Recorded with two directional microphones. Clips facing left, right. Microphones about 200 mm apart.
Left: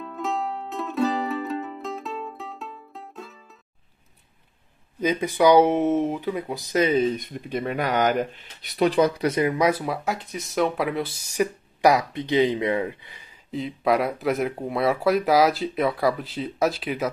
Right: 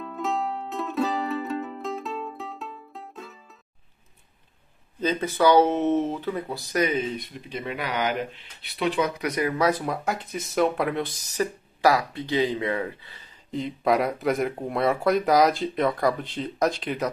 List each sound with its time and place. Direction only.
0.0 s music: centre (ahead or behind)
5.0 s speech: 15° left (ahead or behind); by 7.1 s 30° left (ahead or behind)
7.2 s speech: 50° left (ahead or behind); by 13.3 s 15° left (ahead or behind)
13.5 s speech: centre (ahead or behind)